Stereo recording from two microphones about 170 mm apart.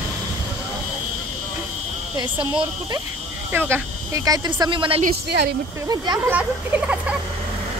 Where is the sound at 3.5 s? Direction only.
15° right (ahead or behind).